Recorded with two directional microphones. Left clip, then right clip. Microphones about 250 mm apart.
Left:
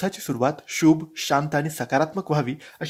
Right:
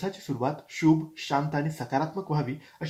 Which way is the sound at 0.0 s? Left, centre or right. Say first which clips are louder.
Left 6 dB; left.